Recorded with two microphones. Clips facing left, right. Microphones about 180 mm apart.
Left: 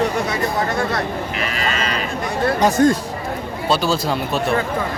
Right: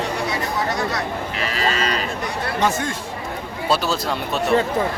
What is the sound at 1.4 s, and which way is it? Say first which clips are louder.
Speech: right 3 dB; 35° right (ahead or behind).